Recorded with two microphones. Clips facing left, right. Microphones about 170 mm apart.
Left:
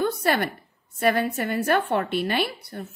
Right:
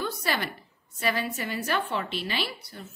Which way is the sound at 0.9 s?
55° left (ahead or behind).